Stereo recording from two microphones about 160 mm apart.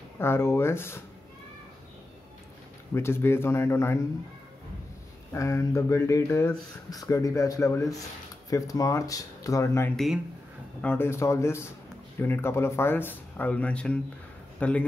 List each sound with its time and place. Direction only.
0.2 s speech: 15° left (ahead or behind)
2.9 s speech: 15° left (ahead or behind)
5.3 s speech: 20° left (ahead or behind)
9.9 s speech: centre (ahead or behind)
10.8 s speech: 10° left (ahead or behind)